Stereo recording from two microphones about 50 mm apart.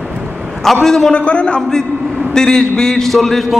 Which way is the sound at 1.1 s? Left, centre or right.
Left.